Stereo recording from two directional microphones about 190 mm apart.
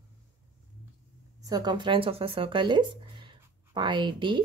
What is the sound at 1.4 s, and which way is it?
Speech, 20° right (ahead or behind).